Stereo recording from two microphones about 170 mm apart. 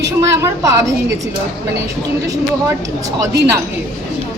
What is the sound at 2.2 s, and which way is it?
Speech, 20° right (ahead or behind).